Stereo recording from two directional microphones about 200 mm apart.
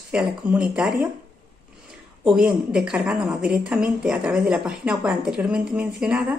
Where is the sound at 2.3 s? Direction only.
5° right (ahead or behind).